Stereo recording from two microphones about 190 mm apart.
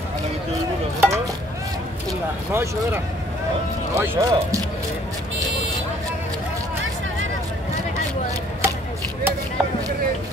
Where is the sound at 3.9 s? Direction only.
15° right (ahead or behind).